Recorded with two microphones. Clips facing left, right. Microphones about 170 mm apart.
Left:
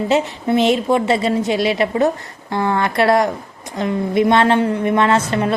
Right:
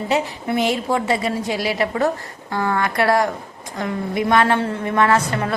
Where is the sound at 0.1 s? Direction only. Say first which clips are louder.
Left 3 dB; 25° left (ahead or behind).